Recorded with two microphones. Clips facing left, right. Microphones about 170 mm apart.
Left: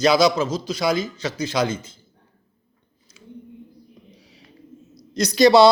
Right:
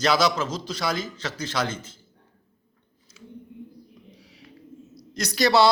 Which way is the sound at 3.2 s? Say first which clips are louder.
Even; 20° left (ahead or behind).